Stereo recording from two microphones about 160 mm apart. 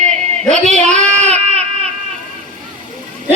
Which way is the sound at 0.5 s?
45° right (ahead or behind).